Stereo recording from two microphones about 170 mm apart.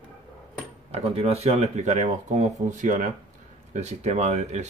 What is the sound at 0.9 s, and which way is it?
Speech, 35° right (ahead or behind).